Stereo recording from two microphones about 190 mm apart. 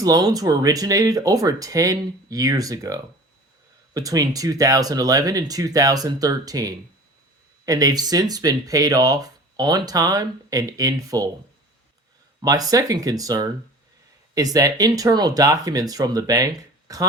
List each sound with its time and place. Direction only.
0.0 s speech: 20° right (ahead or behind)
12.4 s speech: 20° right (ahead or behind)